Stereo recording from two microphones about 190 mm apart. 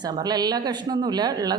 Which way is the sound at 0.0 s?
20° right (ahead or behind).